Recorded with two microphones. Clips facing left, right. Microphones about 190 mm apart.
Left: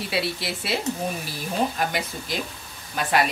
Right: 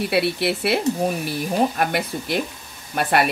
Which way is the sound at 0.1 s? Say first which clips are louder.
Right 6 dB; 60° right (ahead or behind).